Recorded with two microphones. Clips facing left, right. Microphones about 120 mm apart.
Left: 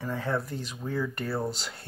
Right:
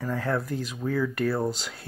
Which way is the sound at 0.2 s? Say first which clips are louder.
Right 3 dB; centre (ahead or behind).